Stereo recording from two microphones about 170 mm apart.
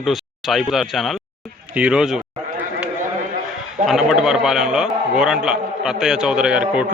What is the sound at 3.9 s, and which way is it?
A man's voice, centre (ahead or behind).